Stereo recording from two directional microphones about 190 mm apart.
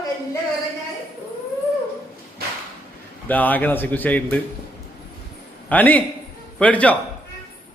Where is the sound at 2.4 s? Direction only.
55° right (ahead or behind).